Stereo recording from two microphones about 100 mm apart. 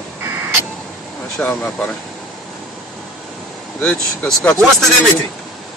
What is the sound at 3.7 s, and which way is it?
Speech, 10° left (ahead or behind).